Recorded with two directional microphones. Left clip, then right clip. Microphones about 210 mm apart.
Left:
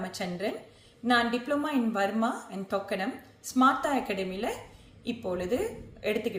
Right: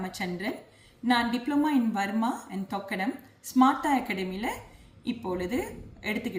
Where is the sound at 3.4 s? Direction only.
15° left (ahead or behind).